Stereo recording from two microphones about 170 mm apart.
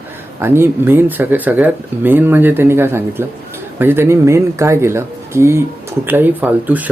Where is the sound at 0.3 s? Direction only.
15° right (ahead or behind).